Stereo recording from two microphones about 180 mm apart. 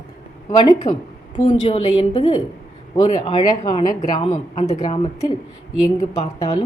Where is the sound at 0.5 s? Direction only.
30° left (ahead or behind).